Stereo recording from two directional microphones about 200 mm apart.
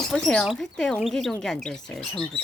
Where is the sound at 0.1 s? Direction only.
5° left (ahead or behind).